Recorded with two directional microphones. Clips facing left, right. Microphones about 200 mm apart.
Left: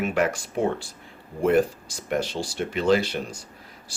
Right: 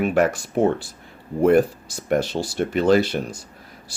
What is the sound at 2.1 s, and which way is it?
Speech, 55° right (ahead or behind).